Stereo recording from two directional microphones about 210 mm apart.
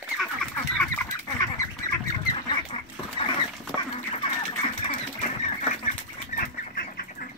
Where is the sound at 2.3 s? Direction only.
25° left (ahead or behind).